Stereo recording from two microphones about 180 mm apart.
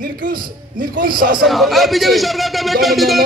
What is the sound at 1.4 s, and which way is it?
A man's voice, centre (ahead or behind).